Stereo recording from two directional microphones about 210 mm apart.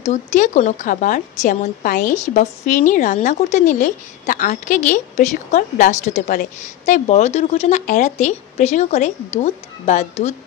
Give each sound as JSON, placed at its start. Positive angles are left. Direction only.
{"t": 0.1, "sound": "a woman's voice", "side_deg": 35}